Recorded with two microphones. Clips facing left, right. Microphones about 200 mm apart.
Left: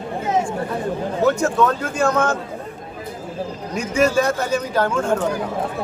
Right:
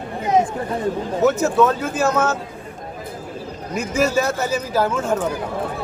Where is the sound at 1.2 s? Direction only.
5° right (ahead or behind).